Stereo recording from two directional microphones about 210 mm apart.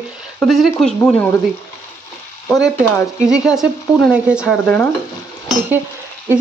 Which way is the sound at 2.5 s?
Centre (ahead or behind).